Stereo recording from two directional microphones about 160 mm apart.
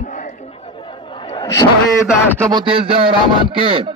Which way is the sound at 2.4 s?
25° right (ahead or behind).